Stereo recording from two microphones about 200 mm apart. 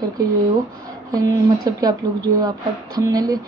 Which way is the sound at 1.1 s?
20° right (ahead or behind).